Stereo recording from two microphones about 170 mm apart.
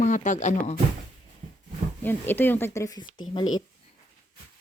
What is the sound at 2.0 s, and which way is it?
Speech, 10° left (ahead or behind).